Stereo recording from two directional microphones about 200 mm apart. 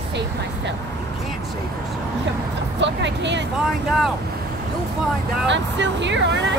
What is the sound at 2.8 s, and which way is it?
Speech, 60° right (ahead or behind).